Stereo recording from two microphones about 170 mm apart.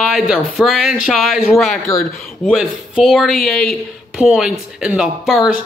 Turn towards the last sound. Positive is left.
turn(degrees=0)  # may be behind; listen again after turning